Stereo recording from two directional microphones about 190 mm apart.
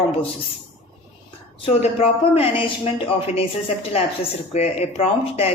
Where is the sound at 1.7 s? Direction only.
35° left (ahead or behind).